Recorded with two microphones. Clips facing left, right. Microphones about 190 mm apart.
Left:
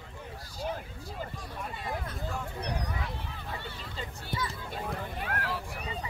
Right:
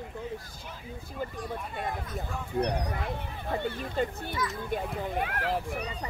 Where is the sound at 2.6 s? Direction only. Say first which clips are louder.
Right 11 dB; 60° right (ahead or behind).